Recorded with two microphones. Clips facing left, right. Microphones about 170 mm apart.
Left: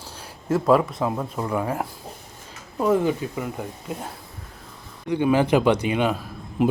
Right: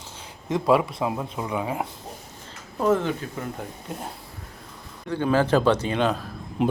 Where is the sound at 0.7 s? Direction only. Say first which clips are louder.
Left 2 dB; 5° right (ahead or behind).